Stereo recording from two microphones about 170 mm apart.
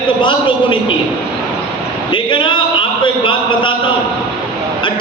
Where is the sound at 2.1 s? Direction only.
30° left (ahead or behind).